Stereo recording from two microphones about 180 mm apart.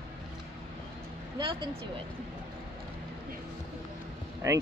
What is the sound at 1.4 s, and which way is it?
Speech, 30° right (ahead or behind).